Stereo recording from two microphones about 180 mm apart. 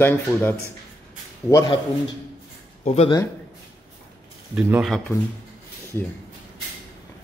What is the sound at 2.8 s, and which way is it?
Speech, 35° left (ahead or behind).